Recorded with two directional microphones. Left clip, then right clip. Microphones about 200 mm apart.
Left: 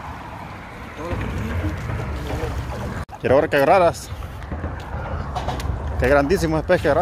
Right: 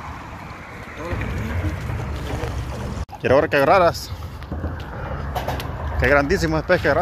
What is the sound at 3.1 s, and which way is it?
Speech, 5° left (ahead or behind).